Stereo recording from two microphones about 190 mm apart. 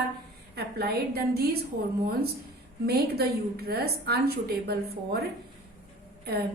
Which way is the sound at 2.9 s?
55° right (ahead or behind).